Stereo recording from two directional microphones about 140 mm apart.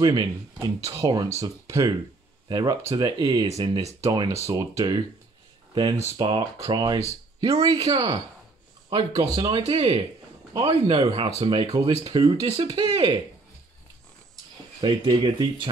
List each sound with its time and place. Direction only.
0.0 s speech: 30° right (ahead or behind)
14.8 s speech: 30° right (ahead or behind)